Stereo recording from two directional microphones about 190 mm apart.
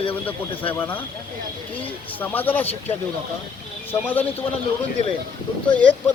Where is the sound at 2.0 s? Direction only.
10° left (ahead or behind).